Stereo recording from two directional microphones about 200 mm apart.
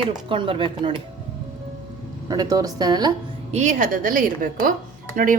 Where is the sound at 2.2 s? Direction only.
20° right (ahead or behind).